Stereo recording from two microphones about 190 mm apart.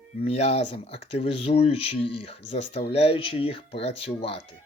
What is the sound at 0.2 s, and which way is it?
Speech, 30° left (ahead or behind).